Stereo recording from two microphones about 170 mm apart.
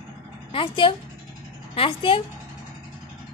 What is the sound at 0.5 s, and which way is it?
Speech, 30° left (ahead or behind).